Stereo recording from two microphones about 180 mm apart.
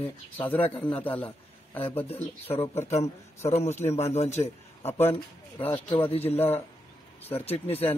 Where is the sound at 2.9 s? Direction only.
35° left (ahead or behind).